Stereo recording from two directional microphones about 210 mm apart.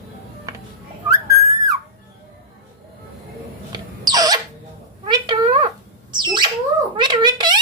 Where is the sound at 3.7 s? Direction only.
20° right (ahead or behind).